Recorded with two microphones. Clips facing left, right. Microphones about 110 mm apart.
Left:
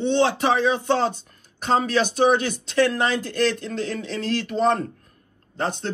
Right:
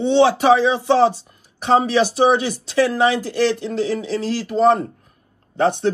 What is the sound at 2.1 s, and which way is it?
Speech, 5° right (ahead or behind).